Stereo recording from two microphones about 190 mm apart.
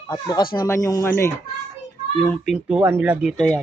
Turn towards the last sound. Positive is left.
turn(degrees=5)  # may be behind; listen again after turning